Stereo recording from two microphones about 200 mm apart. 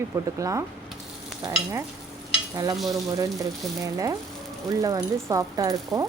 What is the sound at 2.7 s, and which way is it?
Frying, centre (ahead or behind).